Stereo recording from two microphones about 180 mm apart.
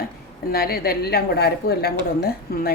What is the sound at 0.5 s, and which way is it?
A woman's voice, 60° left (ahead or behind).